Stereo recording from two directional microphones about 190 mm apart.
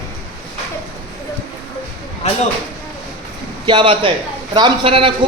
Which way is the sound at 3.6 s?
25° right (ahead or behind).